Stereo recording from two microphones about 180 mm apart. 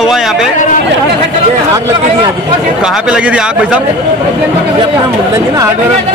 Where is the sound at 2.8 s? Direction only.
5° right (ahead or behind).